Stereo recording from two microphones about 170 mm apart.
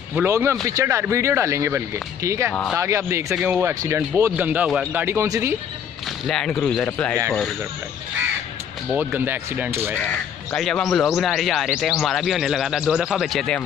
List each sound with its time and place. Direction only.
0.1 s speech: 10° right (ahead or behind)
6.2 s speech: centre (ahead or behind)
8.9 s speech: 10° right (ahead or behind)
9.9 s speech: 10° left (ahead or behind)